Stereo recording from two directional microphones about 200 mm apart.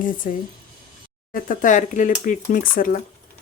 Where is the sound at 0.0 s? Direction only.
40° left (ahead or behind).